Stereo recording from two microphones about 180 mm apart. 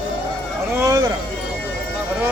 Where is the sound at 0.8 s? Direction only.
20° right (ahead or behind).